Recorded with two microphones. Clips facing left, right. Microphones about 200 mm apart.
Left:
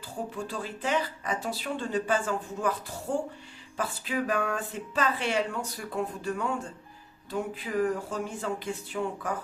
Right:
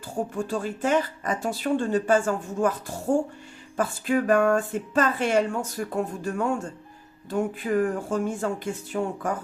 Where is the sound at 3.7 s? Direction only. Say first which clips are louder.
Right 7 dB; 50° right (ahead or behind).